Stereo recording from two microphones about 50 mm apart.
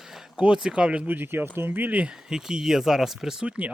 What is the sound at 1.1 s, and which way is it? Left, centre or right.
Speech, right.